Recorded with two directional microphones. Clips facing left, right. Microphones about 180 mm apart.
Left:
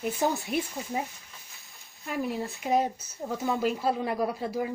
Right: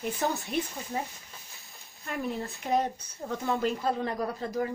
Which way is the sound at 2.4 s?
Centre (ahead or behind).